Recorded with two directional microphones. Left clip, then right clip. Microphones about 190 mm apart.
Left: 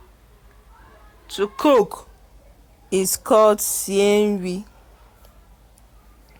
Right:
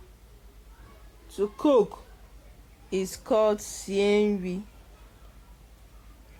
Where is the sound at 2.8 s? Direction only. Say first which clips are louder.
Left 9 dB; 30° left (ahead or behind).